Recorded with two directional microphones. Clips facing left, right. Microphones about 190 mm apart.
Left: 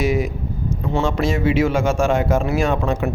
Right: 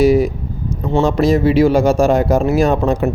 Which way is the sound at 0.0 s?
35° right (ahead or behind).